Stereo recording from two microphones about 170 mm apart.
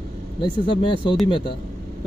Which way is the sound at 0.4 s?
30° left (ahead or behind).